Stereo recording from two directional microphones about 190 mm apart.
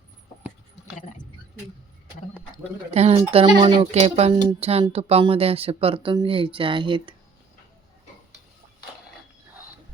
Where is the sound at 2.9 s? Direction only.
35° right (ahead or behind).